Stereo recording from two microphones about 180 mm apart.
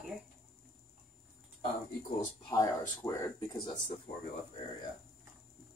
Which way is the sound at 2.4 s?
25° left (ahead or behind).